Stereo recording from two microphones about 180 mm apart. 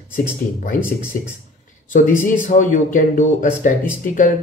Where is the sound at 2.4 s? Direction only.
45° left (ahead or behind).